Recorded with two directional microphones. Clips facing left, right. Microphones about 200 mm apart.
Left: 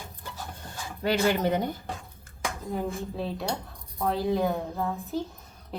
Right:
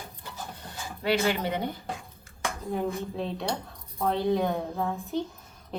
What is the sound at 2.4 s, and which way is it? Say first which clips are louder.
A woman's voice: right 1 dB; 5° left (ahead or behind).